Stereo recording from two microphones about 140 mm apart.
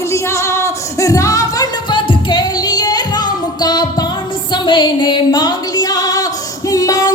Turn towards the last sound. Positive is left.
turn(degrees=25)  # may be behind; listen again after turning